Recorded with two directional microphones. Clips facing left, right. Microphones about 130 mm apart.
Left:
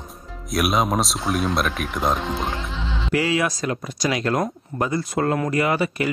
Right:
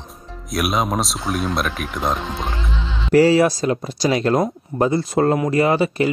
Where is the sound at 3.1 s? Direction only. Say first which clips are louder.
Right 9 dB; 35° right (ahead or behind).